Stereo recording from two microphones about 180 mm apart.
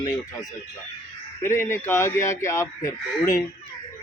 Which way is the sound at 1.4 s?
15° left (ahead or behind).